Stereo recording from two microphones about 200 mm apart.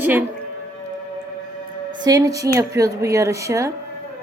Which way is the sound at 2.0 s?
15° right (ahead or behind).